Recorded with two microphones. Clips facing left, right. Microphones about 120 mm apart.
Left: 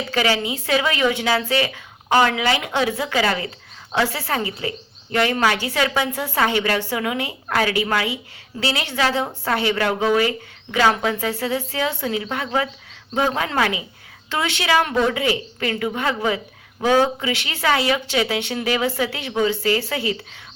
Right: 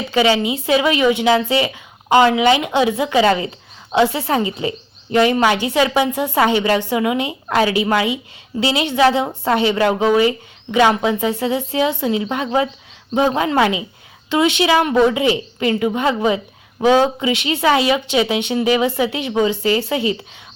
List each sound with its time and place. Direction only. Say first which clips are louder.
0.1 s a woman's voice: right 6 dB; 20° right (ahead or behind)